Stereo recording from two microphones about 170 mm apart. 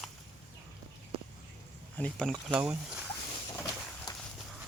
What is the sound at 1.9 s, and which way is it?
Speech, 5° left (ahead or behind).